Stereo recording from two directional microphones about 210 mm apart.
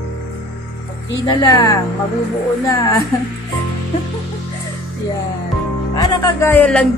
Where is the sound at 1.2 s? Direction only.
20° left (ahead or behind).